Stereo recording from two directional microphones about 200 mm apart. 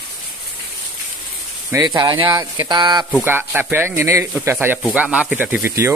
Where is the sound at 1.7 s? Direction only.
20° right (ahead or behind).